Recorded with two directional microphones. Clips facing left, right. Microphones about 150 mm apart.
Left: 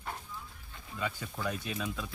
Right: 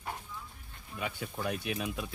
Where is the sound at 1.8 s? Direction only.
20° right (ahead or behind).